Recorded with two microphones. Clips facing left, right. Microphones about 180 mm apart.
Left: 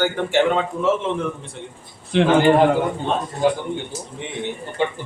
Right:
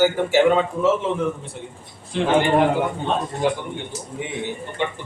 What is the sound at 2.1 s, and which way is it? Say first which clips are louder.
Speech: left 5 dB; 70° left (ahead or behind).